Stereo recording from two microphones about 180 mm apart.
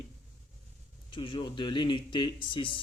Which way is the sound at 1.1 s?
30° left (ahead or behind).